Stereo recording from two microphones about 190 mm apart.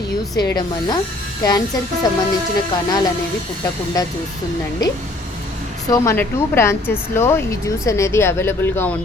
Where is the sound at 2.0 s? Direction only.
20° left (ahead or behind).